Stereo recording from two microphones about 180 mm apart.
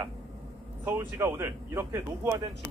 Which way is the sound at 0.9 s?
10° right (ahead or behind).